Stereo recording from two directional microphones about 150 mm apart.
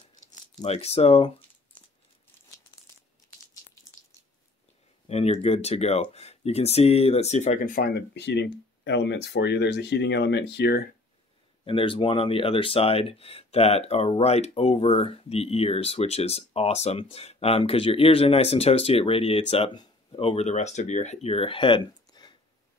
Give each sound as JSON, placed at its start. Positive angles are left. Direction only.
{"t": 0.7, "sound": "speech", "side_deg": 45}
{"t": 5.0, "sound": "speech", "side_deg": 45}
{"t": 11.6, "sound": "speech", "side_deg": 35}